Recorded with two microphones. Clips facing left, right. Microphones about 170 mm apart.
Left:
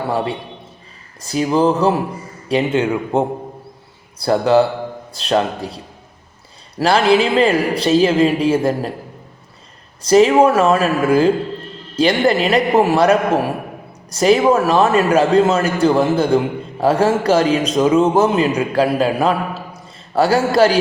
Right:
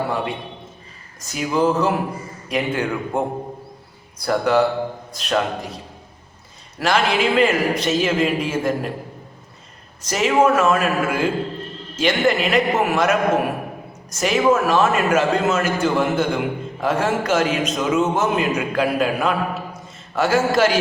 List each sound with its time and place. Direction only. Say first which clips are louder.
1.2 s a man's voice: left 4 dB; 35° left (ahead or behind)
10.0 s a man's voice: left 7 dB; 35° left (ahead or behind)